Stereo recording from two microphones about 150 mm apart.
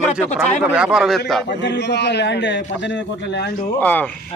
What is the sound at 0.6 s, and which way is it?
Speech, 5° right (ahead or behind).